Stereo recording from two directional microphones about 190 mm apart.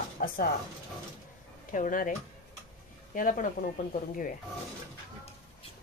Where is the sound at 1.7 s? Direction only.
45° left (ahead or behind).